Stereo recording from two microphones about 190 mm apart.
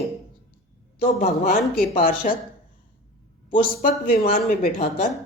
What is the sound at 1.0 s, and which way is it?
A woman's voice, 50° left (ahead or behind).